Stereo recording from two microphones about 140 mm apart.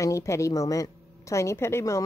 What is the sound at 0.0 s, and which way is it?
A woman's voice, 20° left (ahead or behind).